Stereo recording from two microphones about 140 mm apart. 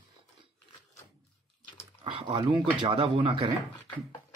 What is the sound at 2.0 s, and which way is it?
Speech, 35° right (ahead or behind).